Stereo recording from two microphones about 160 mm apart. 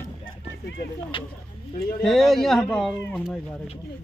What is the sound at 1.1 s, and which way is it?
Speech, 35° left (ahead or behind).